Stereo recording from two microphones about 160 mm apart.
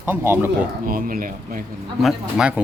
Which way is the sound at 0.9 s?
60° right (ahead or behind).